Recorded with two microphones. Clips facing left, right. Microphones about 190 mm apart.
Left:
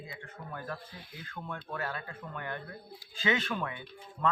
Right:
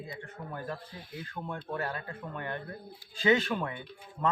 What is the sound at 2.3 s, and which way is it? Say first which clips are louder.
A man's voice: right 2 dB; 30° right (ahead or behind).